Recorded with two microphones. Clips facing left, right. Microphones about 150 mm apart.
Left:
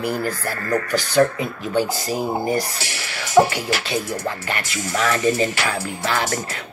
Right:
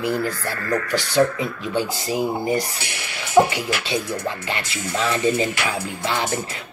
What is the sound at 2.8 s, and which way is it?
Speech, 35° left (ahead or behind).